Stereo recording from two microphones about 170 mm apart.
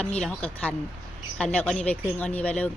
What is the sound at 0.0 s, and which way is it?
Speech, 5° left (ahead or behind).